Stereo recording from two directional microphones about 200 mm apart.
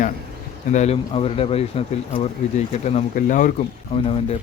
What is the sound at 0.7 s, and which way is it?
Speech, 35° left (ahead or behind).